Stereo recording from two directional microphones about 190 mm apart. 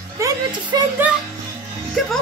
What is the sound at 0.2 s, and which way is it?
Speech, 15° right (ahead or behind).